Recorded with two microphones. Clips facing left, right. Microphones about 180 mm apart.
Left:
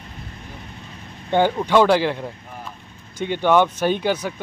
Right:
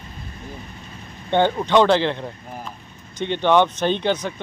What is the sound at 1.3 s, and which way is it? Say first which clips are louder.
Speech: even; 10° left (ahead or behind).